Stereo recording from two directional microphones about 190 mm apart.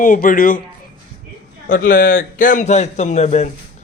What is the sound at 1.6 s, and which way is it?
A man's voice, 45° left (ahead or behind).